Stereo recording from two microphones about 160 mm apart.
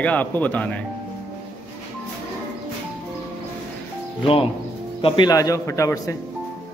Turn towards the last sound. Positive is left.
turn(degrees=20)  # may be behind; listen again after turning